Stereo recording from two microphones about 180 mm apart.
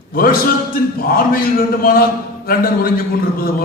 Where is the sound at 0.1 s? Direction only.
55° left (ahead or behind).